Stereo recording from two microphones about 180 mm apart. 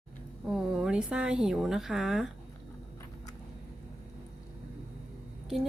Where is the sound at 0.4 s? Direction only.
5° right (ahead or behind).